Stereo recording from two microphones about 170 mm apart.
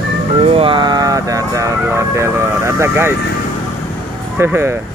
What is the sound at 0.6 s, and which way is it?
Speech, 30° right (ahead or behind).